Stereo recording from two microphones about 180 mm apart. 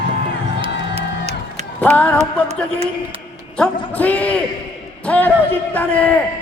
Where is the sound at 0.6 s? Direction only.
35° right (ahead or behind).